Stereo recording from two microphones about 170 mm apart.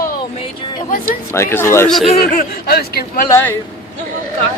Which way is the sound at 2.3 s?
65° left (ahead or behind).